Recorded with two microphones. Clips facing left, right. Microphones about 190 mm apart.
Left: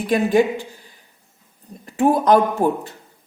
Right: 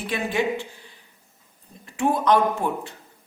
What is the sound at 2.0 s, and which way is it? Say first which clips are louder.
Speech: left 5 dB; 40° left (ahead or behind).